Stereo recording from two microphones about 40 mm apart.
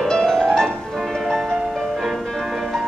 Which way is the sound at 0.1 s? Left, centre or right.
Centre.